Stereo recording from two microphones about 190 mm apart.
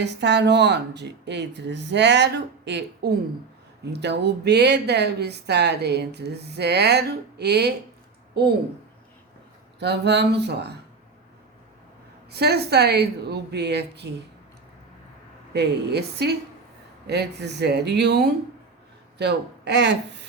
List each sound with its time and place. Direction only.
0.0 s speech: 65° right (ahead or behind)
9.8 s speech: 65° right (ahead or behind)
12.3 s speech: 60° right (ahead or behind)
15.5 s speech: 60° right (ahead or behind)